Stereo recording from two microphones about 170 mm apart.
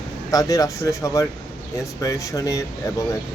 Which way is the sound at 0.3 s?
20° left (ahead or behind).